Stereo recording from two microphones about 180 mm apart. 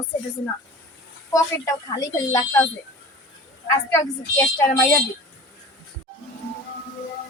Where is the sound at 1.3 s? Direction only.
20° left (ahead or behind).